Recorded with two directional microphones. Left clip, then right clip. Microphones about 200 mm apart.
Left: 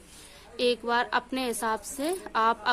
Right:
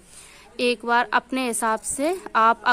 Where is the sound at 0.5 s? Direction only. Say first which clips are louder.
Right 5 dB; 30° right (ahead or behind).